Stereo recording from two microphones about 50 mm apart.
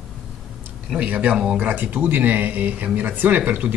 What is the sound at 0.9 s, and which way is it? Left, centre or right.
Speech, right.